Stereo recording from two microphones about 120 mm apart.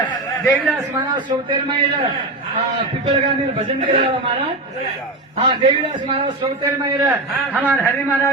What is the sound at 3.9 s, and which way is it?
Speech, 50° right (ahead or behind).